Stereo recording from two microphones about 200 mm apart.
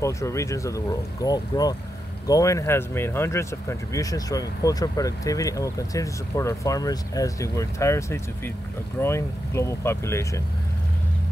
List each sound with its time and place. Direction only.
0.0 s speech: 15° left (ahead or behind)